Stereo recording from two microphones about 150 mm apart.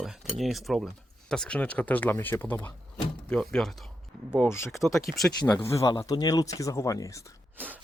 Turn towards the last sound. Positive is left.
turn(degrees=-10)  # may be behind; listen again after turning